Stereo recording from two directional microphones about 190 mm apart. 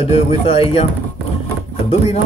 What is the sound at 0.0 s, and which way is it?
Speech, 30° left (ahead or behind).